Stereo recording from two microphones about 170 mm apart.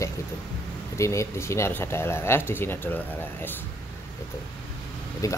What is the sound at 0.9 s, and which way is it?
Speech, 15° left (ahead or behind).